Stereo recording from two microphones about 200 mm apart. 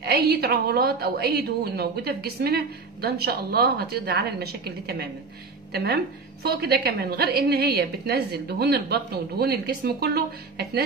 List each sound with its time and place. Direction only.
0.0 s a woman's voice: 50° right (ahead or behind)